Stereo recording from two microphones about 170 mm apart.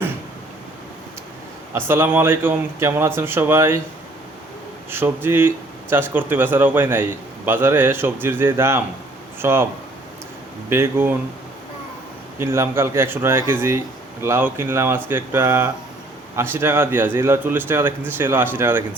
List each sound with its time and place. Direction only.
1.7 s speech: 15° right (ahead or behind)
4.9 s speech: 15° right (ahead or behind)
10.7 s speech: 15° right (ahead or behind)
12.4 s speech: 15° right (ahead or behind)